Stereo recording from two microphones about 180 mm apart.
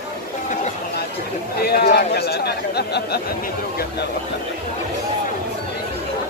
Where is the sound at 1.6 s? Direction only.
60° left (ahead or behind).